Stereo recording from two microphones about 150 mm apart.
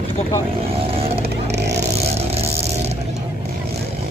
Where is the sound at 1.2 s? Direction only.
90° right.